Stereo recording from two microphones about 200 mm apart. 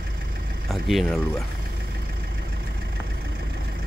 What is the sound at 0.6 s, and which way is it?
Speech, centre (ahead or behind).